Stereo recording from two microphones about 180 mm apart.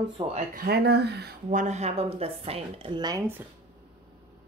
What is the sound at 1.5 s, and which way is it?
Speech, 40° right (ahead or behind).